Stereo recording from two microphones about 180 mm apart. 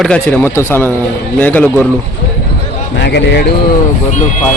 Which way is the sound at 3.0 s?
70° left (ahead or behind).